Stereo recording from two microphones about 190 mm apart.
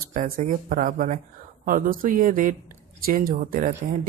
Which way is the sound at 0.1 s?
40° right (ahead or behind).